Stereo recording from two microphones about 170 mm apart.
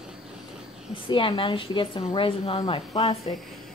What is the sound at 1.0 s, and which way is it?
A woman's voice, 30° left (ahead or behind).